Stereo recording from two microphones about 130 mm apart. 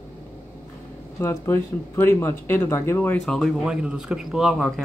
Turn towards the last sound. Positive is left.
turn(degrees=0)  # may be behind; listen again after turning